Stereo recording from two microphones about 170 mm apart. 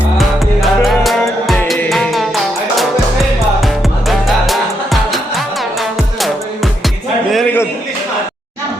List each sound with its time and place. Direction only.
0.2 s music: centre (ahead or behind)
4.4 s music: centre (ahead or behind)